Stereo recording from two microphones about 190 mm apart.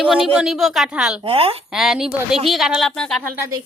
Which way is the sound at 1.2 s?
30° right (ahead or behind).